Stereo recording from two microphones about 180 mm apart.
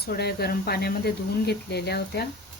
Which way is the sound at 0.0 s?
60° left (ahead or behind).